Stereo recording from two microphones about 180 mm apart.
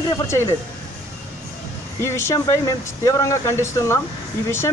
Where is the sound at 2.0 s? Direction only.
15° left (ahead or behind).